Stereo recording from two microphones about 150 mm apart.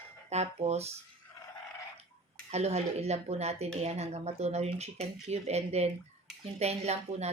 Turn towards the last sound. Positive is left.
turn(degrees=-45)  # may be behind; listen again after turning